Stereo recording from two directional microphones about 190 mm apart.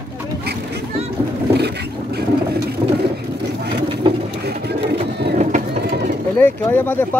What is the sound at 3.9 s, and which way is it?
Bird, 25° right (ahead or behind).